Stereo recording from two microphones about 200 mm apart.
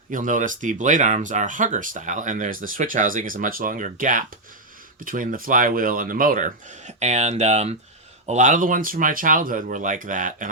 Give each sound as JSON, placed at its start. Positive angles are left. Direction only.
{"t": 0.1, "sound": "speech", "side_deg": -40}